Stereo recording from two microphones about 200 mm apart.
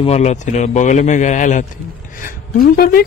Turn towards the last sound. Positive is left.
turn(degrees=45)  # may be behind; listen again after turning